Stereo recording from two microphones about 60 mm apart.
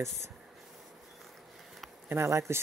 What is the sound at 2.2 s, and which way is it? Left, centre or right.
Speech, right.